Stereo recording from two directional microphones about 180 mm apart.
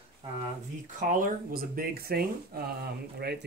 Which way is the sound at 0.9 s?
45° right (ahead or behind).